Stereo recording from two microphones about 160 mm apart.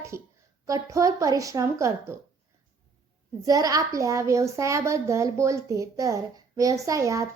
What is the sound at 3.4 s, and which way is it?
A woman's voice, 20° right (ahead or behind).